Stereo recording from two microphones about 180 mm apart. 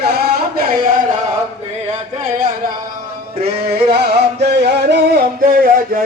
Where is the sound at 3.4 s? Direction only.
65° right (ahead or behind).